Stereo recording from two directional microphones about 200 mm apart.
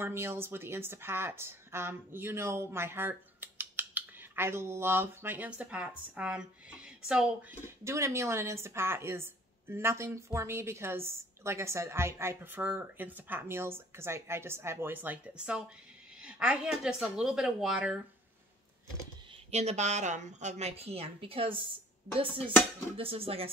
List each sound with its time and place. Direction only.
0.0 s a woman's voice: 10° right (ahead or behind)
19.5 s a woman's voice: 35° right (ahead or behind)
22.9 s speech: 30° right (ahead or behind)